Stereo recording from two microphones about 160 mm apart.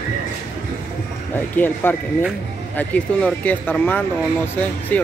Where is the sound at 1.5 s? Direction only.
10° left (ahead or behind).